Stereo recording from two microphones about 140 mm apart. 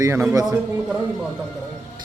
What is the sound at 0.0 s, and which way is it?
Speech, 20° right (ahead or behind).